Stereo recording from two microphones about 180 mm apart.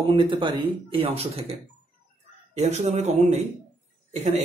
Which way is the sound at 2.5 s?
40° right (ahead or behind).